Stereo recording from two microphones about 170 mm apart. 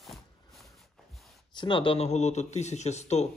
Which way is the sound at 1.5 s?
30° left (ahead or behind).